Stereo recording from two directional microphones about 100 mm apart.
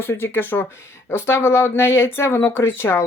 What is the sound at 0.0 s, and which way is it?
Speech, 25° left (ahead or behind).